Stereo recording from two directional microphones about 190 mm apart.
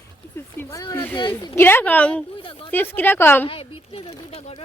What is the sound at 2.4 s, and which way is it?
Speech, 25° left (ahead or behind).